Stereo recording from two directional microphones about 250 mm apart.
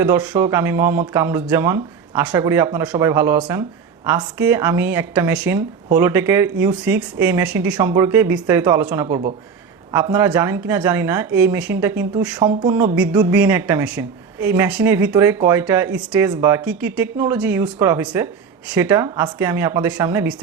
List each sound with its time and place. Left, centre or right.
0.0 s speech: centre